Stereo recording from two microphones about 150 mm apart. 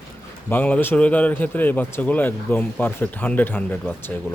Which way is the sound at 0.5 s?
10° left (ahead or behind).